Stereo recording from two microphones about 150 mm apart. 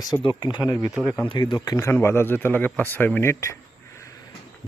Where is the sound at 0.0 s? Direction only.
30° left (ahead or behind).